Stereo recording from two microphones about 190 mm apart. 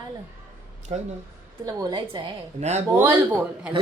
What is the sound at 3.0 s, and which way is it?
Speech, 10° right (ahead or behind).